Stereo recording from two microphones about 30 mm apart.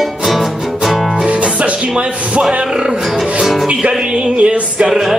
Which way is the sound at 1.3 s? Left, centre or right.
Right.